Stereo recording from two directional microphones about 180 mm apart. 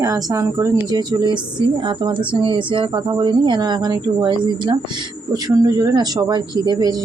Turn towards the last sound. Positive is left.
turn(degrees=-25)  # may be behind; listen again after turning